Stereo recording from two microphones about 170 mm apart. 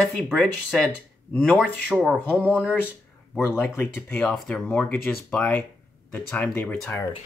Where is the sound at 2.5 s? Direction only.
10° left (ahead or behind).